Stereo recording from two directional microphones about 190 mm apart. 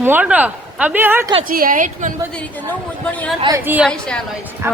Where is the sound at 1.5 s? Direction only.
50° right (ahead or behind).